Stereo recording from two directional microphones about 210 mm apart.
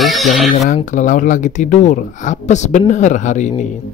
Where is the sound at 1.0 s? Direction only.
40° left (ahead or behind).